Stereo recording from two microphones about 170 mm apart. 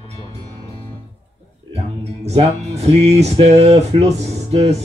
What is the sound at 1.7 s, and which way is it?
Speech, 40° right (ahead or behind).